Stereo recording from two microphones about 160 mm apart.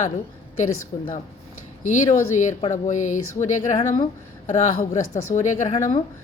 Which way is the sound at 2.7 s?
50° left (ahead or behind).